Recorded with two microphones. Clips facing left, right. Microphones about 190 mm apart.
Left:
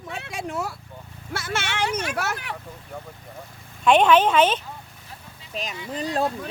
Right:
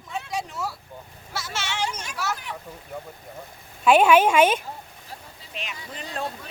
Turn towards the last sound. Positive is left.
turn(degrees=35)  # may be behind; listen again after turning